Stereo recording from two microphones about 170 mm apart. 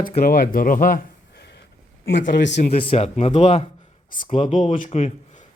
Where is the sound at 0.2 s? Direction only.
60° left (ahead or behind).